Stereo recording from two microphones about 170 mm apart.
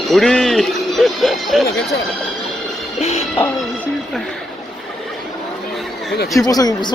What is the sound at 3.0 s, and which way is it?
Music, 40° left (ahead or behind).